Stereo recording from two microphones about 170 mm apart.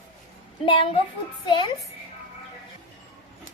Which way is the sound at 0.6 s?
30° left (ahead or behind).